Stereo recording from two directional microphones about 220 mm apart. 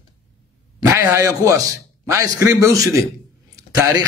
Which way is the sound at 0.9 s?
15° right (ahead or behind).